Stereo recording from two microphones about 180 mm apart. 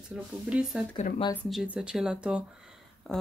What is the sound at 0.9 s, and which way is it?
Speech, 40° left (ahead or behind).